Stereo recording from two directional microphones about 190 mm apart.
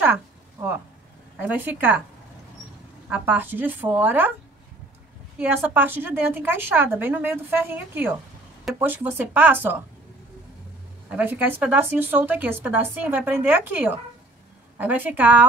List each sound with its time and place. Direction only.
1.4 s a woman's voice: 10° right (ahead or behind)
3.1 s a woman's voice: 10° right (ahead or behind)
5.4 s a woman's voice: 10° right (ahead or behind)
11.1 s a woman's voice: 10° right (ahead or behind)